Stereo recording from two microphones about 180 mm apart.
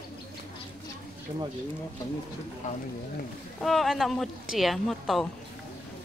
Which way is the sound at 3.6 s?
Centre (ahead or behind).